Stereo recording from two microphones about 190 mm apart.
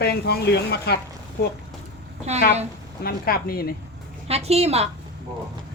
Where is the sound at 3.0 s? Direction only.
50° left (ahead or behind).